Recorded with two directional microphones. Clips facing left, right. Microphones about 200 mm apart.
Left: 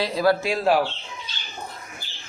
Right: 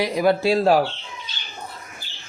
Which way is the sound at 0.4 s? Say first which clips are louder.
Right 4 dB; 35° right (ahead or behind).